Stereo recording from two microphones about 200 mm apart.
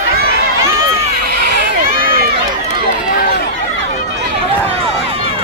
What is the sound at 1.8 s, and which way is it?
Run, 45° right (ahead or behind).